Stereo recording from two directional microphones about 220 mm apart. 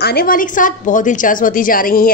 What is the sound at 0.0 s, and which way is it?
A woman's voice, 45° left (ahead or behind).